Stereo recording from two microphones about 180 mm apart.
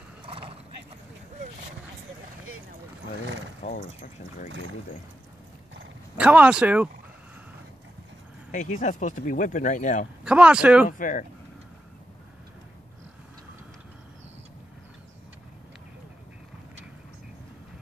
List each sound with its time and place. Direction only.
3.6 s mechanisms: 35° left (ahead or behind)
6.1 s speech: 5° right (ahead or behind)
8.5 s speech: 45° left (ahead or behind)
10.2 s speech: 5° right (ahead or behind)
10.9 s speech: 45° left (ahead or behind)